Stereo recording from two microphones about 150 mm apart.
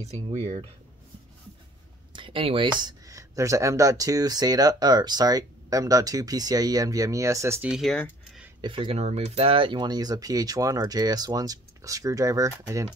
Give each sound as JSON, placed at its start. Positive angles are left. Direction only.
{"t": 0.0, "sound": "speech", "side_deg": -45}
{"t": 2.1, "sound": "speech", "side_deg": -35}
{"t": 7.7, "sound": "speech", "side_deg": 5}
{"t": 8.5, "sound": "speech", "side_deg": -35}